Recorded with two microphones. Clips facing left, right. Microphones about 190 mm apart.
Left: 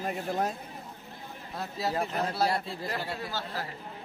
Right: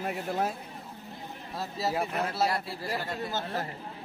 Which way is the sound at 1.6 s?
5° right (ahead or behind).